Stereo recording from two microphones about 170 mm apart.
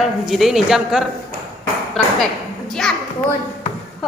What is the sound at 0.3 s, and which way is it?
Speech, centre (ahead or behind).